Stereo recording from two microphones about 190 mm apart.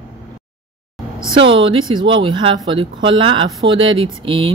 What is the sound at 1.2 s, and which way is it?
A woman's voice, 25° right (ahead or behind).